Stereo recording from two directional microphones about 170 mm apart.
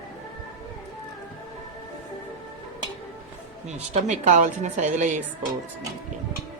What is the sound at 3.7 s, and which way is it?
A woman's voice, 40° right (ahead or behind).